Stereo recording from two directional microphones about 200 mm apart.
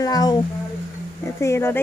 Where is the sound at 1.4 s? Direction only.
15° left (ahead or behind).